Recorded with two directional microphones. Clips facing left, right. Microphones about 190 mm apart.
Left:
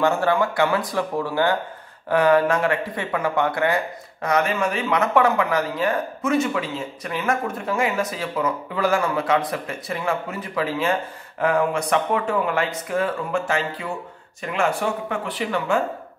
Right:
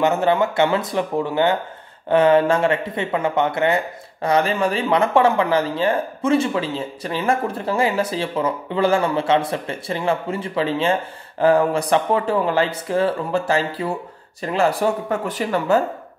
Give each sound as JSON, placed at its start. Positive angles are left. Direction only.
{"t": 0.0, "sound": "speech", "side_deg": -20}